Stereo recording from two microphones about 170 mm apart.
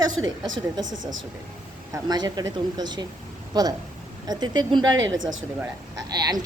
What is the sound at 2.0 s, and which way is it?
A woman's voice, 25° right (ahead or behind).